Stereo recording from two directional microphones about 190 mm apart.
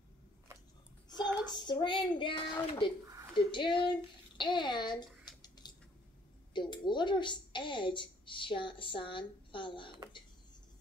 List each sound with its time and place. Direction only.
1.1 s child singing: 5° right (ahead or behind)
1.6 s a woman's voice: 25° left (ahead or behind)
5.6 s squish: 20° left (ahead or behind)
6.5 s a woman's voice: 25° left (ahead or behind)